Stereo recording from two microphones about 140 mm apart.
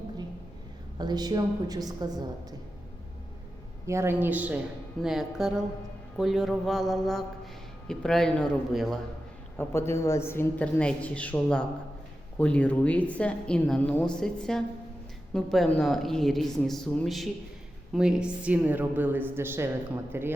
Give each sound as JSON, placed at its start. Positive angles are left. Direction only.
{"t": 0.9, "sound": "a woman's voice", "side_deg": -30}
{"t": 3.8, "sound": "a woman's voice", "side_deg": -20}
{"t": 9.6, "sound": "a woman's voice", "side_deg": 20}